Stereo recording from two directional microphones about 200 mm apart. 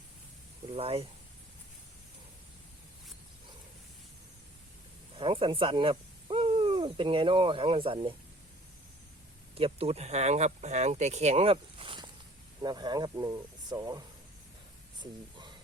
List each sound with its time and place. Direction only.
0.7 s speech: 30° right (ahead or behind)
5.1 s speech: 25° right (ahead or behind)
9.6 s speech: 30° right (ahead or behind)